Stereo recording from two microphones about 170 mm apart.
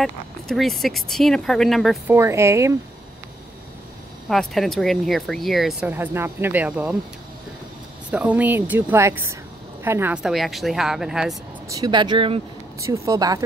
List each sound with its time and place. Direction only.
0.0 s speech: centre (ahead or behind)
2.0 s speech: 15° right (ahead or behind)
4.3 s speech: centre (ahead or behind)
8.1 s speech: 10° right (ahead or behind)
11.7 s speech: 25° right (ahead or behind)
12.8 s speech: 20° right (ahead or behind)